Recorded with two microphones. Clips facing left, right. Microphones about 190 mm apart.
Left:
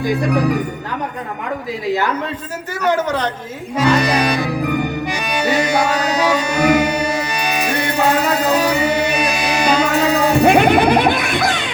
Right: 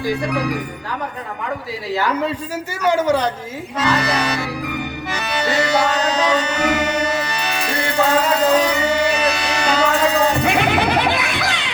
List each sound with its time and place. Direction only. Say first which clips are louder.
2.8 s speech: right 1 dB; 10° right (ahead or behind)
3.8 s speech: left 4 dB; 10° left (ahead or behind)
4.6 s music: left 7 dB; 50° left (ahead or behind)
5.1 s music: left 1 dB; 10° left (ahead or behind)
10.4 s music: left 6 dB; 50° left (ahead or behind)